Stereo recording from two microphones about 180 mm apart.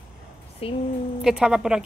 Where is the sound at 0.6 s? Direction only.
30° left (ahead or behind).